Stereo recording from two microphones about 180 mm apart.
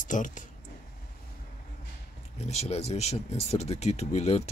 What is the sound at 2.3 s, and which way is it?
Speech, 35° left (ahead or behind).